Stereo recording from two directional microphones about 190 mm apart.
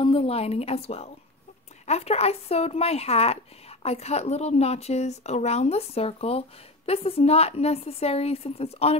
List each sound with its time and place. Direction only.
0.0 s a woman's voice: 30° left (ahead or behind)